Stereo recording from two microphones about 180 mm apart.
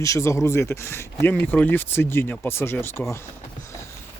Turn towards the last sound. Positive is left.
turn(degrees=15)  # may be behind; listen again after turning